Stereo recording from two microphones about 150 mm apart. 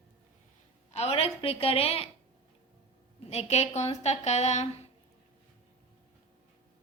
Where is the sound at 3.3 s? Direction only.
45° left (ahead or behind).